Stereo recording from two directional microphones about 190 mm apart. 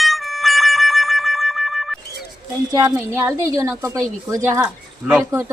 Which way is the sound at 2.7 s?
15° right (ahead or behind).